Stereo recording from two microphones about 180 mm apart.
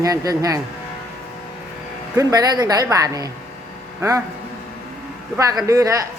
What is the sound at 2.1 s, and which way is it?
Speech, 20° right (ahead or behind).